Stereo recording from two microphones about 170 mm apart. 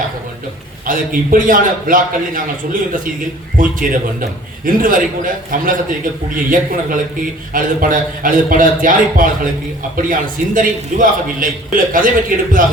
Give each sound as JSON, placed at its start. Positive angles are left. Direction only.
{"t": 0.9, "sound": "a man's voice", "side_deg": -55}
{"t": 3.6, "sound": "a man's voice", "side_deg": -55}